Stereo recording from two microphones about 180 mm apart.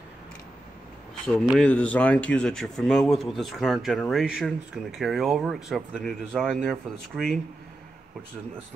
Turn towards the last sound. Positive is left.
turn(degrees=0)  # may be behind; listen again after turning